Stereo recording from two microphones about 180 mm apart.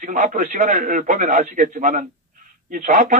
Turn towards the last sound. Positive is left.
turn(degrees=-45)  # may be behind; listen again after turning